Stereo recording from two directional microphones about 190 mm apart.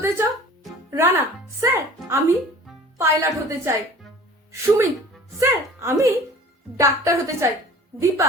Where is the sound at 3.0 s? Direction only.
15° right (ahead or behind).